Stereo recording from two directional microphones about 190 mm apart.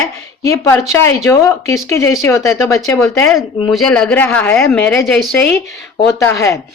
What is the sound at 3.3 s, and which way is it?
A woman's voice, centre (ahead or behind).